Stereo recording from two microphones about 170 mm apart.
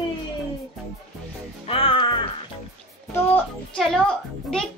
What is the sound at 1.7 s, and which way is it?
Music, 35° left (ahead or behind).